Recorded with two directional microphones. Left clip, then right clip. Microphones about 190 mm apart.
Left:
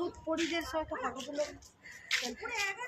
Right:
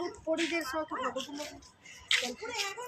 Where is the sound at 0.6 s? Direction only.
50° left (ahead or behind).